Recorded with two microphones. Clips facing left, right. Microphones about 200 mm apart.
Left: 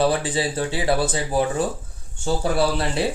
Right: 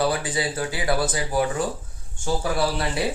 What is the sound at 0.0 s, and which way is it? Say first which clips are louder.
Speech: left 3 dB; 25° left (ahead or behind).